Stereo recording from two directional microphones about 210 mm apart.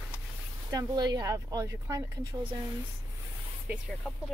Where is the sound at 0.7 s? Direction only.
20° right (ahead or behind).